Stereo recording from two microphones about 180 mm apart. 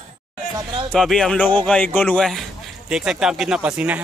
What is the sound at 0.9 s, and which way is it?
Speech, 5° left (ahead or behind).